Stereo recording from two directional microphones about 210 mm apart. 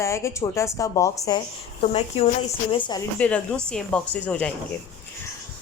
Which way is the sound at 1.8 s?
30° left (ahead or behind).